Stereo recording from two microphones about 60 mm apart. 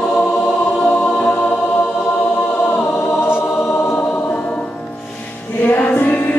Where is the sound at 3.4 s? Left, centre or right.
Left.